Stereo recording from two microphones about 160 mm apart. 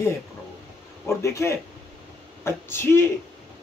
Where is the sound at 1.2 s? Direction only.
20° left (ahead or behind).